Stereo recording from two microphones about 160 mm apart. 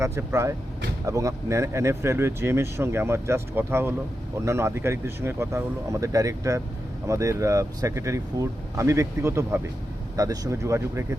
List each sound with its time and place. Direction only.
0.0 s speech: 15° right (ahead or behind)